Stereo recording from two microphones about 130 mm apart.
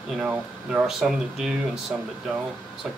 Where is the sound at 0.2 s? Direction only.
5° right (ahead or behind).